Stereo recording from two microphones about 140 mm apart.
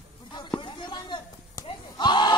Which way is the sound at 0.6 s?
35° left (ahead or behind).